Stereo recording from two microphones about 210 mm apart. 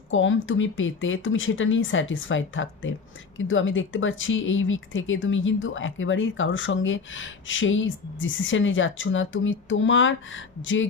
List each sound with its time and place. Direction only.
0.1 s speech: 65° left (ahead or behind)